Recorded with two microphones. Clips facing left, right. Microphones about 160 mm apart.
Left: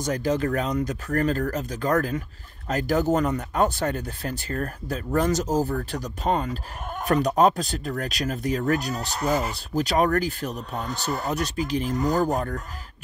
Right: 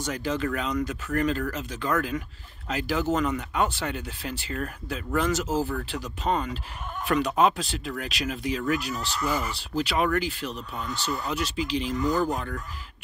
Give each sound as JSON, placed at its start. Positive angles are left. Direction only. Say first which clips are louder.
{"t": 0.0, "sound": "speech", "louder": "left 4 dB", "side_deg": 40}